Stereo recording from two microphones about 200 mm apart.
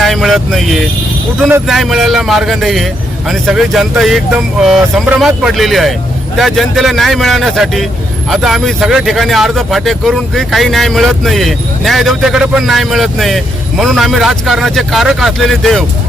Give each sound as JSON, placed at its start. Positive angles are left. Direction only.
{"t": 0.0, "sound": "speech", "side_deg": 0}